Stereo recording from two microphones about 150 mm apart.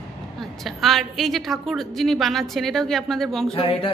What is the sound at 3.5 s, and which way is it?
Speech, 40° left (ahead or behind).